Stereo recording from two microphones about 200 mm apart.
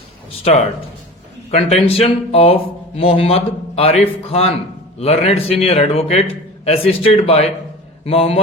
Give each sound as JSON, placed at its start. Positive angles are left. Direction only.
{"t": 0.4, "sound": "a man's voice", "side_deg": 30}